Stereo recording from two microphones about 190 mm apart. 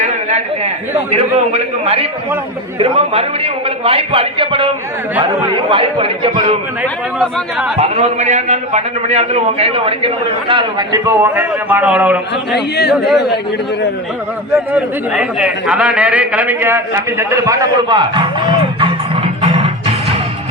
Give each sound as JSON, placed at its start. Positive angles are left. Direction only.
{"t": 0.0, "sound": "a sound", "side_deg": -35}
{"t": 1.1, "sound": "a man's voice", "side_deg": -35}
{"t": 5.7, "sound": "a man's voice", "side_deg": -30}
{"t": 7.2, "sound": "speech", "side_deg": -5}
{"t": 7.8, "sound": "a man's voice", "side_deg": -35}
{"t": 12.5, "sound": "speech", "side_deg": 60}
{"t": 14.5, "sound": "a man's voice", "side_deg": -5}
{"t": 19.4, "sound": "music", "side_deg": -30}